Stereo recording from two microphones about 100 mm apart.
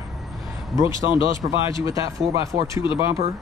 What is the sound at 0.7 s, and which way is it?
Speech, 55° left (ahead or behind).